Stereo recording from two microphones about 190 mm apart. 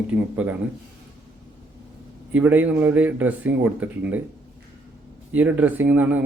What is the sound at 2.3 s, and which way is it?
Speech, 10° right (ahead or behind).